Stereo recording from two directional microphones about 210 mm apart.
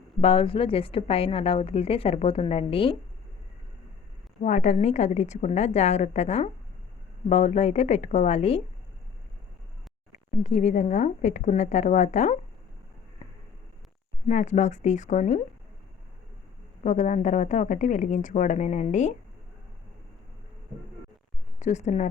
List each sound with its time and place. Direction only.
0.2 s a woman's voice: 25° left (ahead or behind)
4.4 s speech: 35° left (ahead or behind)
10.4 s speech: 35° left (ahead or behind)
13.2 s a sound: 25° left (ahead or behind)
14.3 s speech: 35° left (ahead or behind)
16.8 s speech: 35° left (ahead or behind)
21.6 s speech: 35° left (ahead or behind)